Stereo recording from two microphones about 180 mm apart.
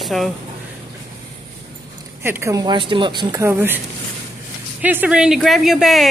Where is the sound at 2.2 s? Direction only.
15° right (ahead or behind).